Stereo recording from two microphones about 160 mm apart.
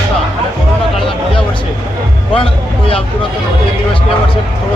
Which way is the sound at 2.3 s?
35° left (ahead or behind).